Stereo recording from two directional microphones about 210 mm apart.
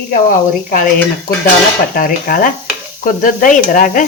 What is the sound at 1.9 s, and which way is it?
Speech, 40° left (ahead or behind).